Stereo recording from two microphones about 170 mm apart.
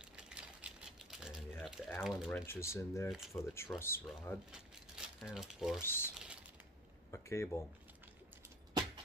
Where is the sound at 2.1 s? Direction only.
Centre (ahead or behind).